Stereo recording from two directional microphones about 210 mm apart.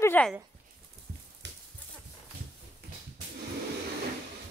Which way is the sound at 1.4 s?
55° right (ahead or behind).